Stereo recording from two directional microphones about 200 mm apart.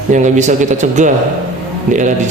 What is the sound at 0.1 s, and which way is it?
A man's voice, 35° right (ahead or behind).